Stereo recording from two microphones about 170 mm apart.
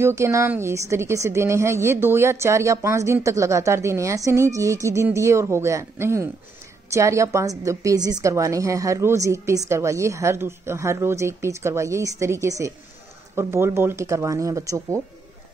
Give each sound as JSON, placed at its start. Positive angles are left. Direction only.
{"t": 0.0, "sound": "a woman's voice", "side_deg": -15}